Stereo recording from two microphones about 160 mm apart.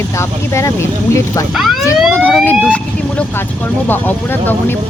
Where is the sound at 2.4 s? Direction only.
10° left (ahead or behind).